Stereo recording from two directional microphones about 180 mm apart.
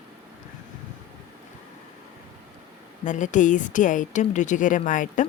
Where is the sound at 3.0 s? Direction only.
45° left (ahead or behind).